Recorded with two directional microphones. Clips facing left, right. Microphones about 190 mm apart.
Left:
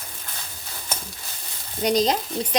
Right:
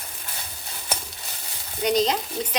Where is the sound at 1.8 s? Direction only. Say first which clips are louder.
Left 1 dB; 40° left (ahead or behind).